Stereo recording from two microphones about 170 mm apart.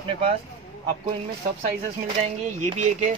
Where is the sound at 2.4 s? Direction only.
45° right (ahead or behind).